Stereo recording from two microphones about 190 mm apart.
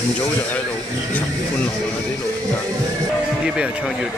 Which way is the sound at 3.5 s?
5° right (ahead or behind).